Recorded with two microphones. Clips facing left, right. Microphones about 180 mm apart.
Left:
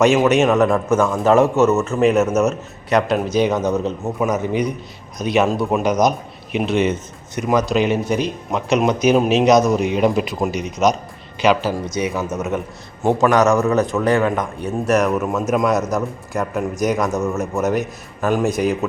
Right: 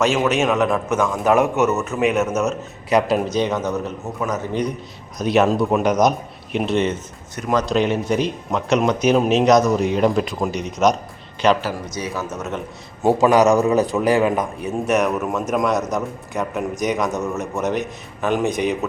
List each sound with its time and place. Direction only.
0.1 s a man's voice: 5° right (ahead or behind)
3.3 s speech: 10° left (ahead or behind)
5.2 s speech: centre (ahead or behind)
11.9 s a man's voice: 20° left (ahead or behind)
13.3 s a man's voice: 15° right (ahead or behind); by 18.9 s centre (ahead or behind)